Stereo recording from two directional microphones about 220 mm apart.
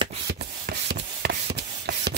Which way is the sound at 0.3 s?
45° right (ahead or behind).